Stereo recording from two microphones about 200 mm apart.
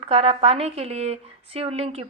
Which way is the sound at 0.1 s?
30° right (ahead or behind).